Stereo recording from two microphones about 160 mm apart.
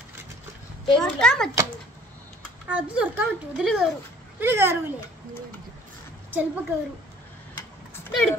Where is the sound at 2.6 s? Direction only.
10° right (ahead or behind).